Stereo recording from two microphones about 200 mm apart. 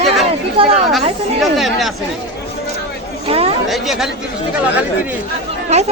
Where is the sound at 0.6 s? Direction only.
25° right (ahead or behind).